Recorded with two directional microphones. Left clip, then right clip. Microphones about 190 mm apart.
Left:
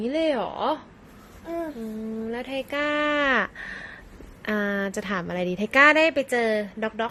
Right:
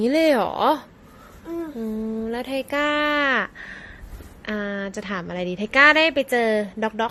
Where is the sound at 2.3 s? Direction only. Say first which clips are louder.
Right 3 dB; 20° right (ahead or behind); by 3.4 s centre (ahead or behind).